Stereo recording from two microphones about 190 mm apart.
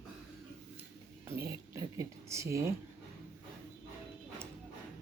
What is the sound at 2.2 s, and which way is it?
Speech, 15° right (ahead or behind).